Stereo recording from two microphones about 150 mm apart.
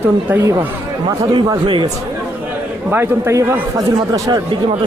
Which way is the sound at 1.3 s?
30° right (ahead or behind).